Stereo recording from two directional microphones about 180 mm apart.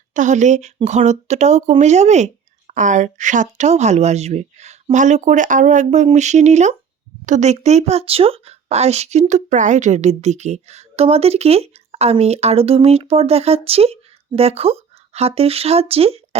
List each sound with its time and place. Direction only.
0.1 s speech: 45° right (ahead or behind)